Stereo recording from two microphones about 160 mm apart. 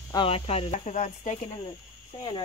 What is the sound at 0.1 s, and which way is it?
Speech, 35° left (ahead or behind).